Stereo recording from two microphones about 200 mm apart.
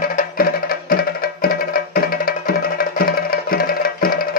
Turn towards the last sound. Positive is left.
turn(degrees=50)  # may be behind; listen again after turning